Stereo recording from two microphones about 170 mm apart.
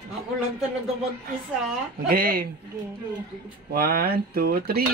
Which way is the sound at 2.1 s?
60° right (ahead or behind).